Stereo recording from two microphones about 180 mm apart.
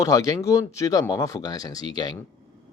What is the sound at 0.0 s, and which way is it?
Speech, 20° left (ahead or behind).